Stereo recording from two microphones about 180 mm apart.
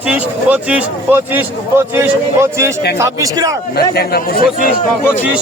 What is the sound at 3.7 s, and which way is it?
Speech, 60° left (ahead or behind).